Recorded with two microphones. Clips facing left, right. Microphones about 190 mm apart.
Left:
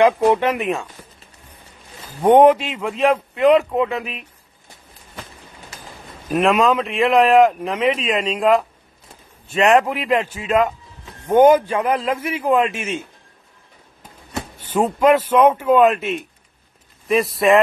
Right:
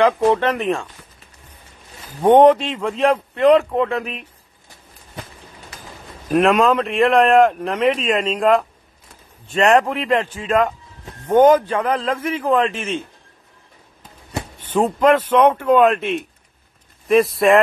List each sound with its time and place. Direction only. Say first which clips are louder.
0.3 s a man's voice: even; 15° left (ahead or behind)
2.2 s speech: right 1 dB; 10° left (ahead or behind)
6.3 s a man's voice: right 1 dB; centre (ahead or behind)
14.7 s speech: even; 5° left (ahead or behind)